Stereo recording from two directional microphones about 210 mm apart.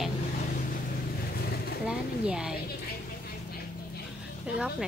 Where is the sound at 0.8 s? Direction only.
45° left (ahead or behind).